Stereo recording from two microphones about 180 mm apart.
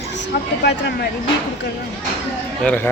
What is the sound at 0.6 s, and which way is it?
Speech, 70° left (ahead or behind).